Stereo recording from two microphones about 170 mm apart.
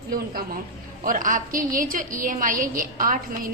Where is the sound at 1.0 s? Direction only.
50° right (ahead or behind).